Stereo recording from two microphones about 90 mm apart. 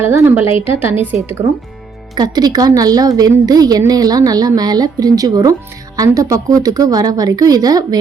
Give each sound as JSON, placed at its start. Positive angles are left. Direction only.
{"t": 0.0, "sound": "a woman's voice", "side_deg": -25}
{"t": 2.1, "sound": "a woman's voice", "side_deg": -50}